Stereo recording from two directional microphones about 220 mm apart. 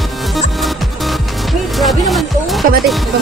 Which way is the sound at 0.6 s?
Centre (ahead or behind).